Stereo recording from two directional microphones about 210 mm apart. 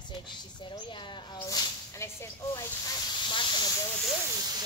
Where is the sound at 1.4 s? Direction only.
15° left (ahead or behind).